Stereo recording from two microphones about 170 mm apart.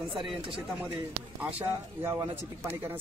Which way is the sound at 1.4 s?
10° right (ahead or behind).